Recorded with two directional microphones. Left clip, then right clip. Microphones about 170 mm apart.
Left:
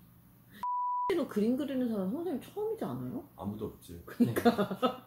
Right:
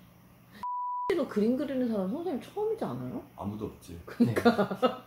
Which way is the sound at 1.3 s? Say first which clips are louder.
Right 3 dB; 25° left (ahead or behind).